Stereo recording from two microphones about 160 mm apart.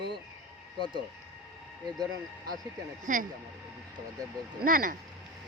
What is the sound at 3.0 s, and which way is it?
Speech, 55° right (ahead or behind).